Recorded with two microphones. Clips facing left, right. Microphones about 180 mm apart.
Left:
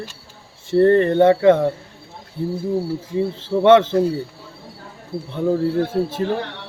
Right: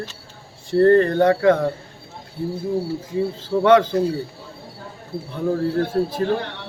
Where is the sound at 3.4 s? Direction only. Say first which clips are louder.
Left 2 dB; 25° left (ahead or behind).